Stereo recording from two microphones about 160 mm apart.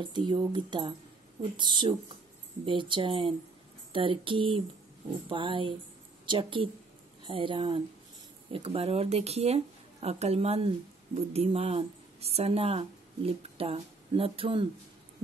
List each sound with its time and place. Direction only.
0.0 s speech: 30° right (ahead or behind)